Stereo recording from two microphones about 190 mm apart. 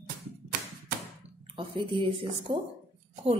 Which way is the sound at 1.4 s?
25° right (ahead or behind).